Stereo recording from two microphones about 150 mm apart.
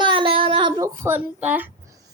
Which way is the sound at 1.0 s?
10° right (ahead or behind).